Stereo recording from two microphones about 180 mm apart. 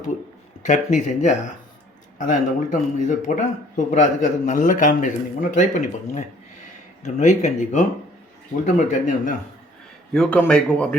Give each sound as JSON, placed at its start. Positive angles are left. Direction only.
{"t": 0.6, "sound": "a man's voice", "side_deg": 40}
{"t": 2.6, "sound": "a man's voice", "side_deg": 45}
{"t": 10.1, "sound": "a man's voice", "side_deg": 5}